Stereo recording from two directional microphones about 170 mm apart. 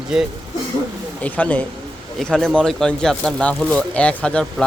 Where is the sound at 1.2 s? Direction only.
10° left (ahead or behind).